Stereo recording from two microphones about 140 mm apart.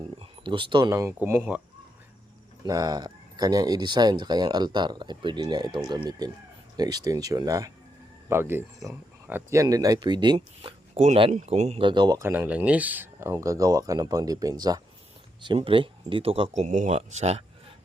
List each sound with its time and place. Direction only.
0.2 s a sound: 35° right (ahead or behind)
0.9 s speech: 20° right (ahead or behind)
2.6 s speech: 25° right (ahead or behind); by 11.8 s 50° right (ahead or behind)
11.8 s speech: 35° right (ahead or behind)
12.2 s speech: 15° right (ahead or behind)
15.5 s speech: 40° right (ahead or behind)
16.5 s speech: 60° right (ahead or behind)